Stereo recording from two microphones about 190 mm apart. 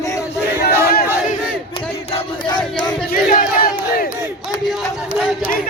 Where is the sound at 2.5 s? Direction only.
20° left (ahead or behind).